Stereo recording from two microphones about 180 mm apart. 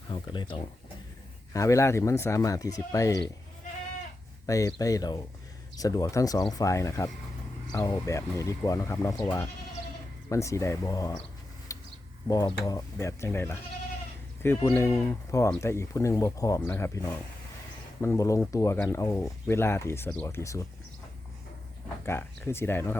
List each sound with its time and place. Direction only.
0.1 s speech: 25° left (ahead or behind)
4.4 s speech: 20° left (ahead or behind)
11.7 s a sound: 20° left (ahead or behind)
12.3 s speech: 20° left (ahead or behind)
22.0 s speech: 15° left (ahead or behind)